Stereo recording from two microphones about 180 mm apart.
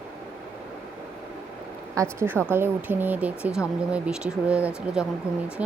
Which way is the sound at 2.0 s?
15° right (ahead or behind).